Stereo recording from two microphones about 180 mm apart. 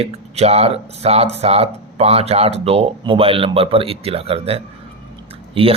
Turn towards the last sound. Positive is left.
turn(degrees=-30)  # may be behind; listen again after turning